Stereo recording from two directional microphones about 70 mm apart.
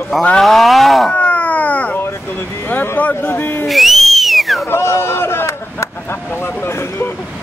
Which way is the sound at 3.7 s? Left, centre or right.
Centre.